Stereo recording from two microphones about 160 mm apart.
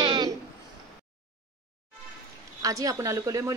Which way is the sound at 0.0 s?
25° right (ahead or behind).